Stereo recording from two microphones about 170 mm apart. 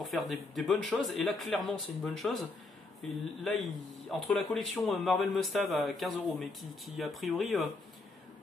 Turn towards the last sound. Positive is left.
turn(degrees=0)  # may be behind; listen again after turning